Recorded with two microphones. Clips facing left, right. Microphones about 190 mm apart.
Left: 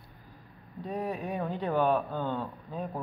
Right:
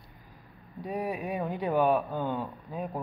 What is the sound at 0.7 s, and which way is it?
Speech, 10° right (ahead or behind).